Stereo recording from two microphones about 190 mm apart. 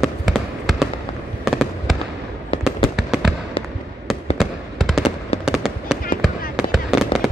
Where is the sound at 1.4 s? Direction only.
Centre (ahead or behind).